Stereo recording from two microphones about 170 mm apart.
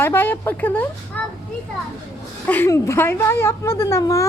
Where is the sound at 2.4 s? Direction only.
10° left (ahead or behind).